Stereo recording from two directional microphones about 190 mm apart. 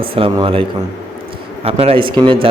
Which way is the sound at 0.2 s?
30° right (ahead or behind).